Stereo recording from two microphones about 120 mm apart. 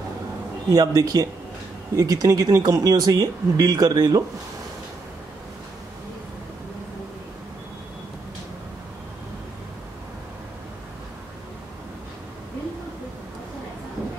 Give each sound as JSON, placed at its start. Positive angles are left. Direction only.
{"t": 0.7, "sound": "speech", "side_deg": -30}